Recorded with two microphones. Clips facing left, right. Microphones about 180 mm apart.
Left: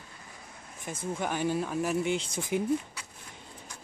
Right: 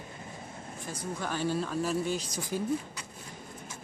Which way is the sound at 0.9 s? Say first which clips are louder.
Left 3 dB; 20° left (ahead or behind).